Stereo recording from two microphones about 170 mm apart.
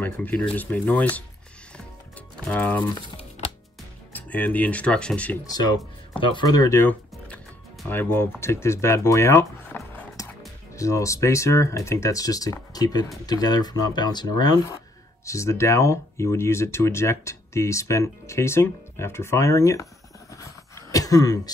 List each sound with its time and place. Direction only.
0.0 s speech: 10° left (ahead or behind)
2.4 s speech: 10° left (ahead or behind)
4.1 s speech: 10° left (ahead or behind)
6.1 s speech: 25° left (ahead or behind)
20.3 s a sound: 20° left (ahead or behind)